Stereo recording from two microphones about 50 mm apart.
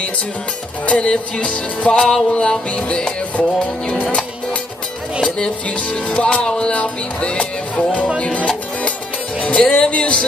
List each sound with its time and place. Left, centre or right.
0.8 s music: left
5.8 s music: left
8.2 s speech: left
9.4 s music: left